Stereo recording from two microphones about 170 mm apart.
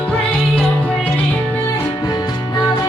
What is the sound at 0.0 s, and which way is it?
Music, 5° left (ahead or behind).